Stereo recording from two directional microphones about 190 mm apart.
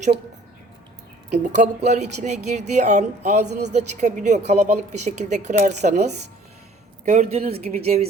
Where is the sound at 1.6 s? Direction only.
40° right (ahead or behind).